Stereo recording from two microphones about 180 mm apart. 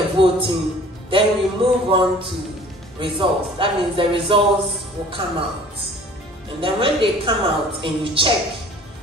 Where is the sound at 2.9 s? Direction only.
30° right (ahead or behind).